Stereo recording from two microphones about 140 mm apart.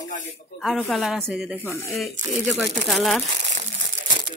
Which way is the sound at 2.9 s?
Centre (ahead or behind).